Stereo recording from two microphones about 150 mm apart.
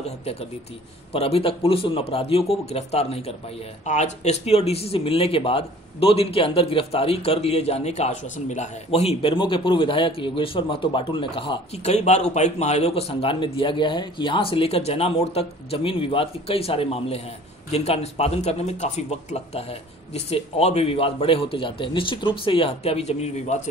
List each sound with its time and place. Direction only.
0.2 s speech: 45° left (ahead or behind)